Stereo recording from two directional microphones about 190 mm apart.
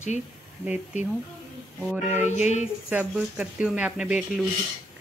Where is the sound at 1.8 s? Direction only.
5° right (ahead or behind).